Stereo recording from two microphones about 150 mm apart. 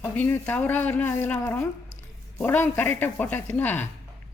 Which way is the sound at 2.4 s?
10° left (ahead or behind).